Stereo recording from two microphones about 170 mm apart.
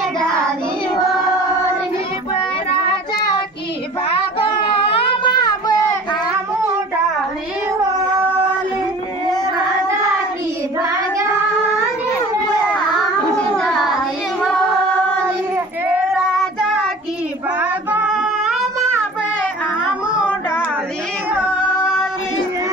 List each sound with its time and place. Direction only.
4.4 s a sound: 35° left (ahead or behind)
13.6 s child singing: centre (ahead or behind)
16.3 s child singing: centre (ahead or behind)